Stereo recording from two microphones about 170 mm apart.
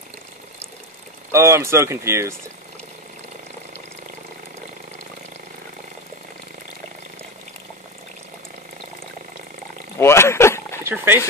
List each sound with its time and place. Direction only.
1.3 s speech: 15° right (ahead or behind)
9.9 s a sound: 15° left (ahead or behind)
10.8 s speech: 10° right (ahead or behind)